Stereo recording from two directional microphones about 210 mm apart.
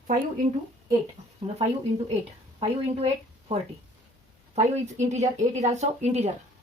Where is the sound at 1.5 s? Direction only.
30° right (ahead or behind).